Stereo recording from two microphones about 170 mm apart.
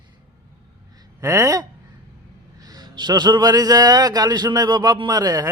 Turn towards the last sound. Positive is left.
turn(degrees=-20)  # may be behind; listen again after turning